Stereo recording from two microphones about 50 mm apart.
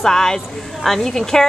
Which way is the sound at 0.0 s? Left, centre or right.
Centre.